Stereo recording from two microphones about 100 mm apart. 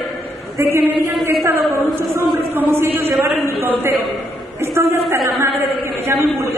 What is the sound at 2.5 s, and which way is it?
A woman's voice, 20° right (ahead or behind).